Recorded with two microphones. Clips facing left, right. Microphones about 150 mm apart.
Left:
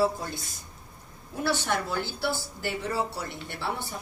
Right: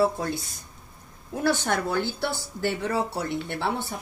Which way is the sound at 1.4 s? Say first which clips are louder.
Right 3 dB; 50° right (ahead or behind).